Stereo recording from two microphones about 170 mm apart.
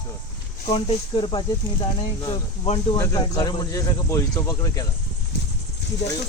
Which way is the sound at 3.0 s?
20° left (ahead or behind).